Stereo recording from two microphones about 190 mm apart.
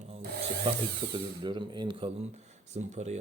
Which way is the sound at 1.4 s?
25° right (ahead or behind).